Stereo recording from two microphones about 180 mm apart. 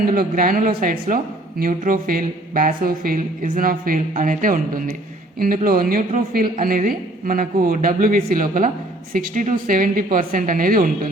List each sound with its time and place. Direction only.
0.0 s speech: 55° right (ahead or behind)